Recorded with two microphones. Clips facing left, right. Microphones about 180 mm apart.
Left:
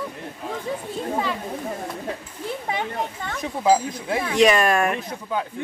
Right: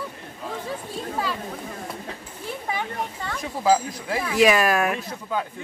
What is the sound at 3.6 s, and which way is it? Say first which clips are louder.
Speech: left 1 dB; 25° left (ahead or behind).